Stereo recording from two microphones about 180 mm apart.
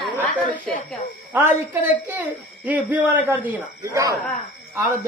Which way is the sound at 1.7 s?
10° right (ahead or behind).